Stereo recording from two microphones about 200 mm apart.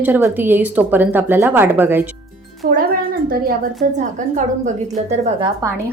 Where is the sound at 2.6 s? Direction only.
50° right (ahead or behind).